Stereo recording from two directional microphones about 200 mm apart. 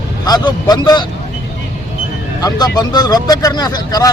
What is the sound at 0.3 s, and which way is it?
Speech, 20° left (ahead or behind).